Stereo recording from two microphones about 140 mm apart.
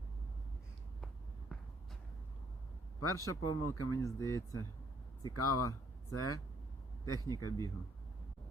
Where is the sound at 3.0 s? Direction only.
20° left (ahead or behind).